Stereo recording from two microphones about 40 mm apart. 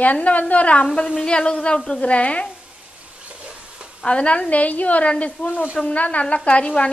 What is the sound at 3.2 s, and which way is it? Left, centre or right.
Stir, right.